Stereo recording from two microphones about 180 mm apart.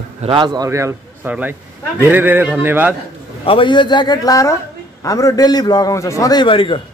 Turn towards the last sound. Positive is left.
turn(degrees=30)  # may be behind; listen again after turning